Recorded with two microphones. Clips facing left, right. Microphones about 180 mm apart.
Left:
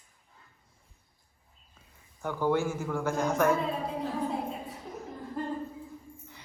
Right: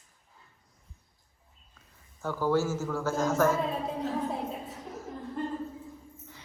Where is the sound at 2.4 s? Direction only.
15° left (ahead or behind).